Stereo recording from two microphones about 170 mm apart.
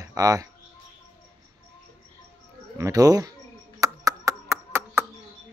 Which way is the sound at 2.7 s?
20° right (ahead or behind).